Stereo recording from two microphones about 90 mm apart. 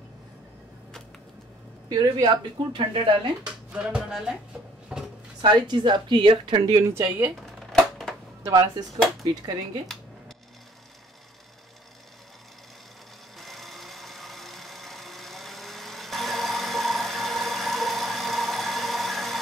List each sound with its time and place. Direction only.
1.9 s speech: 35° right (ahead or behind)
2.2 s speech: 50° right (ahead or behind)
3.4 s music: 10° right (ahead or behind)
4.9 s drawer open or close: 10° right (ahead or behind)
5.4 s a woman's voice: 55° right (ahead or behind)
6.9 s speech: 25° right (ahead or behind)
7.7 s a sound: 5° left (ahead or behind)
8.5 s speech: 45° right (ahead or behind)
13.4 s sewing machine: centre (ahead or behind)